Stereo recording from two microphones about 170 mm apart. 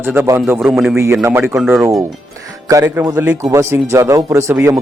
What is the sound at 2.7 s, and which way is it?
A man's voice, 20° right (ahead or behind).